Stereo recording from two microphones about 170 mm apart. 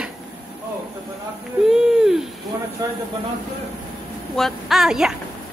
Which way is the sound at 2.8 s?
20° right (ahead or behind).